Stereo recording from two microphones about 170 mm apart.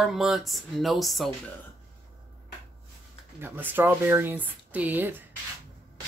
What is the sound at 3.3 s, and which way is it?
Speech, 10° right (ahead or behind).